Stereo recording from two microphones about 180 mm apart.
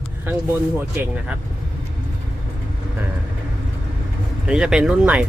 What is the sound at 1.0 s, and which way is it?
Speech, 10° right (ahead or behind).